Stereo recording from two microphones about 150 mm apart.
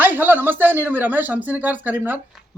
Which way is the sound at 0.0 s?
10° right (ahead or behind).